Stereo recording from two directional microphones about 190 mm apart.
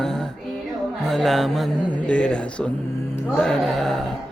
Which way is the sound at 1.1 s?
Centre (ahead or behind).